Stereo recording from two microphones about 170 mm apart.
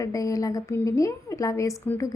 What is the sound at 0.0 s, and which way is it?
A woman's voice, 20° left (ahead or behind).